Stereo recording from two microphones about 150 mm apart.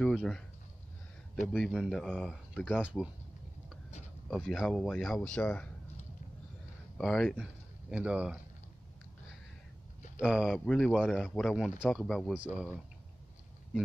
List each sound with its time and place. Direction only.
0.0 s speech: 5° left (ahead or behind)
1.5 s speech: centre (ahead or behind)
2.8 s speech: 5° right (ahead or behind)
4.4 s speech: 5° left (ahead or behind)
7.0 s speech: 5° left (ahead or behind)
7.9 s speech: 5° right (ahead or behind)
10.2 s speech: 5° right (ahead or behind)